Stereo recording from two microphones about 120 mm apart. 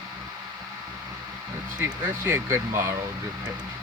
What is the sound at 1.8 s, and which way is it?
Speech, 20° right (ahead or behind).